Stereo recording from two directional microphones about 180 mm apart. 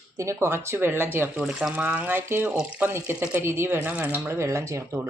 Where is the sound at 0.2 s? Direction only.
15° right (ahead or behind).